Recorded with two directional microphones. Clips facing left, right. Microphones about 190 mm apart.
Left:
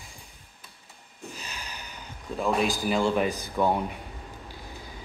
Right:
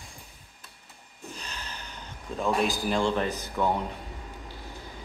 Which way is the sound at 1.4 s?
10° left (ahead or behind).